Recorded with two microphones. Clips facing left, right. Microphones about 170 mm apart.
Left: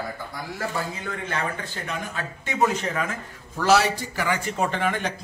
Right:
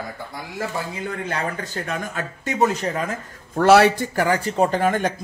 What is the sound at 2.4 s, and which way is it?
Speech, 40° right (ahead or behind).